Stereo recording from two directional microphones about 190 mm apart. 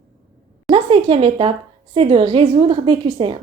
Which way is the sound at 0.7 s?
30° right (ahead or behind).